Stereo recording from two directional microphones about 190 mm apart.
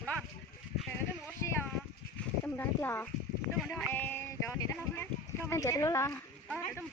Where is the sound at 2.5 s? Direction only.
10° left (ahead or behind).